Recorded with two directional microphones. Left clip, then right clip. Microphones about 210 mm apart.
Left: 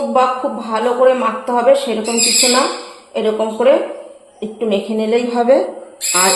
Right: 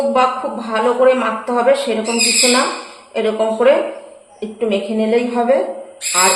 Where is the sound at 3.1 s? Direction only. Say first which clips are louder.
Even; 30° left (ahead or behind).